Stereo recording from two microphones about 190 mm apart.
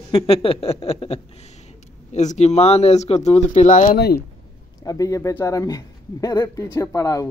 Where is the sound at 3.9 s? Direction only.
55° left (ahead or behind).